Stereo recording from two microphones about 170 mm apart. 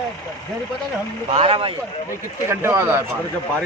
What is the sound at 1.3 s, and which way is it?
Speech, 35° right (ahead or behind).